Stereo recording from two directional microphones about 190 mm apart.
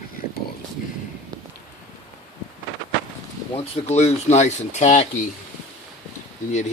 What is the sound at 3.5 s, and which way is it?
Speech, 35° left (ahead or behind).